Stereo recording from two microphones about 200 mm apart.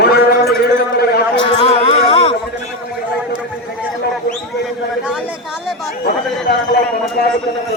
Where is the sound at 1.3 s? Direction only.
30° left (ahead or behind).